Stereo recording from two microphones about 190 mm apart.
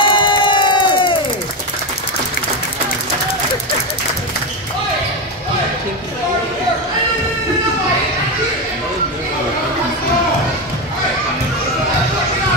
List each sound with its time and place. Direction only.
0.0 s crowd: 25° left (ahead or behind)